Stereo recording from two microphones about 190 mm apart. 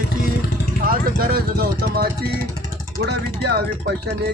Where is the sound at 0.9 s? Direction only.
50° right (ahead or behind).